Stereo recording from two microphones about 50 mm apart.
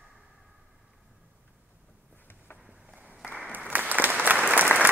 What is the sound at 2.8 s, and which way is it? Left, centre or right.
Applause, right.